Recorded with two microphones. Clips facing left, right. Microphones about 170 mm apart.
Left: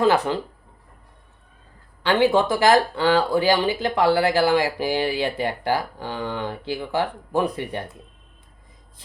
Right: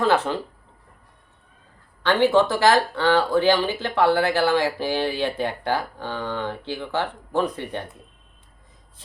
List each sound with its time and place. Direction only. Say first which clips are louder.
0.0 s speech: left 2 dB; 10° left (ahead or behind)
2.0 s speech: even; 10° left (ahead or behind)